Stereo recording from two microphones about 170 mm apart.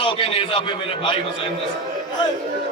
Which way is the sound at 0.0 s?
30° left (ahead or behind).